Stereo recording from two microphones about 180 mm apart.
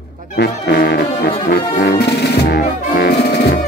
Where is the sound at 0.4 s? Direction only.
65° left (ahead or behind).